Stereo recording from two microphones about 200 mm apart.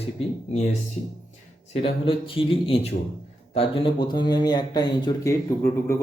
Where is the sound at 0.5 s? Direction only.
35° left (ahead or behind).